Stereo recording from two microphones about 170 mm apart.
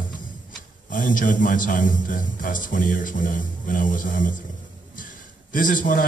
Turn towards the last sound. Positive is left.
turn(degrees=55)  # may be behind; listen again after turning